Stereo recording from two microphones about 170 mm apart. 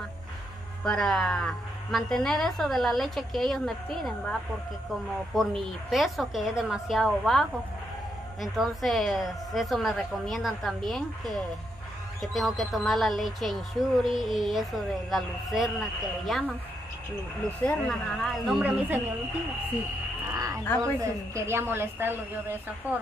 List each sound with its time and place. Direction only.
0.8 s speech: 5° left (ahead or behind)
17.6 s speech: 5° left (ahead or behind)
20.2 s livestock: 20° right (ahead or behind)
21.0 s a woman's voice: 15° right (ahead or behind)